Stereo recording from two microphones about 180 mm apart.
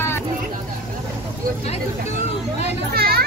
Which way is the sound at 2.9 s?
60° right (ahead or behind).